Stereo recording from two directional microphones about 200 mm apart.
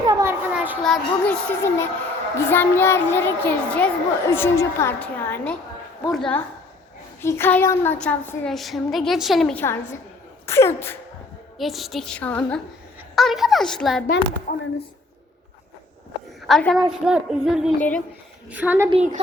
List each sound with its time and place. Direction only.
0.0 s a sound: 15° right (ahead or behind)
0.9 s a child's voice: 5° left (ahead or behind)
11.5 s a woman's voice: centre (ahead or behind)
14.5 s speech: 45° left (ahead or behind)
16.5 s a woman's voice: centre (ahead or behind)
18.9 s a woman's voice: 30° right (ahead or behind)